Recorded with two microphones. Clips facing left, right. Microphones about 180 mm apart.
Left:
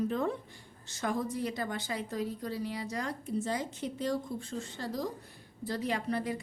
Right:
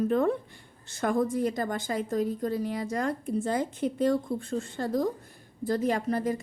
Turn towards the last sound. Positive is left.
turn(degrees=-45)  # may be behind; listen again after turning